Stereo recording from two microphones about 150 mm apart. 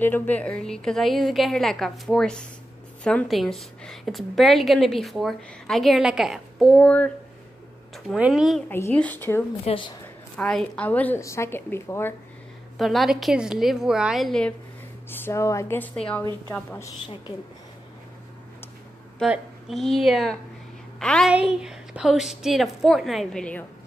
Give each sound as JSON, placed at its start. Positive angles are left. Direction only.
{"t": 0.0, "sound": "a woman's voice", "side_deg": 10}
{"t": 8.6, "sound": "a woman's voice", "side_deg": 15}
{"t": 9.7, "sound": "a woman's voice", "side_deg": 35}
{"t": 10.3, "sound": "a woman's voice", "side_deg": 5}
{"t": 12.7, "sound": "a woman's voice", "side_deg": 0}
{"t": 15.0, "sound": "a woman's voice", "side_deg": 15}
{"t": 19.2, "sound": "a woman's voice", "side_deg": -5}
{"t": 21.3, "sound": "a woman's voice", "side_deg": -5}